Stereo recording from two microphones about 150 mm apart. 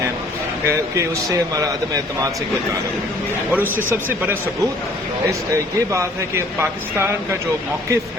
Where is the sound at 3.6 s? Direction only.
15° left (ahead or behind).